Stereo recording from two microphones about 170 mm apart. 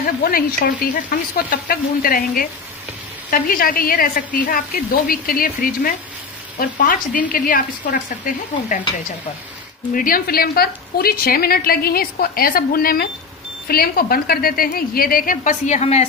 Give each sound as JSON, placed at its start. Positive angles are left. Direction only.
{"t": 0.2, "sound": "a woman's voice", "side_deg": 60}
{"t": 9.9, "sound": "a woman's voice", "side_deg": 55}